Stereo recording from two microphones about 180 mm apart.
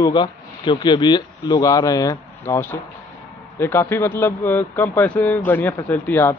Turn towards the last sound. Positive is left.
turn(degrees=10)  # may be behind; listen again after turning